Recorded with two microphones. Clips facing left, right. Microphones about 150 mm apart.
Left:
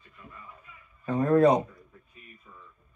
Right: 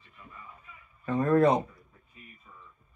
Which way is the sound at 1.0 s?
20° left (ahead or behind).